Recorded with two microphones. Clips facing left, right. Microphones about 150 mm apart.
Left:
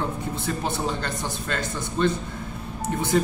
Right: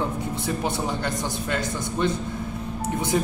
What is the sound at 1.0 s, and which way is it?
Speech, 15° right (ahead or behind).